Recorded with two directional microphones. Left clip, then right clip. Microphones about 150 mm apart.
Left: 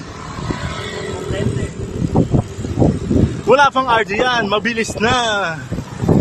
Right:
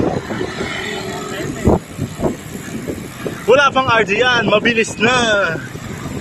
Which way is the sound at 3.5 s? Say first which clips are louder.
Even; centre (ahead or behind).